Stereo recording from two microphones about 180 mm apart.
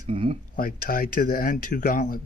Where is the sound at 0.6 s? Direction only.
55° left (ahead or behind).